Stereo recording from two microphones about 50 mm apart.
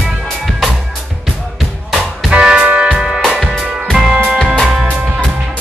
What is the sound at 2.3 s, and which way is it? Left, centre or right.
Music, right.